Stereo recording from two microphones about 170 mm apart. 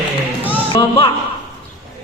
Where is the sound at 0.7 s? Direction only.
30° left (ahead or behind).